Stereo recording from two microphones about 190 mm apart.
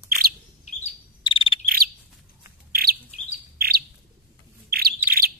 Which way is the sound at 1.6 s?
50° right (ahead or behind).